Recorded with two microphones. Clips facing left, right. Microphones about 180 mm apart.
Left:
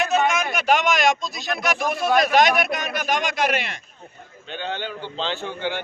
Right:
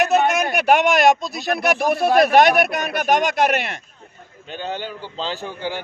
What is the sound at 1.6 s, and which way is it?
Speech, 60° right (ahead or behind).